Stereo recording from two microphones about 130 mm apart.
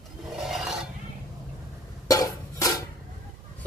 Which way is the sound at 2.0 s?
25° left (ahead or behind).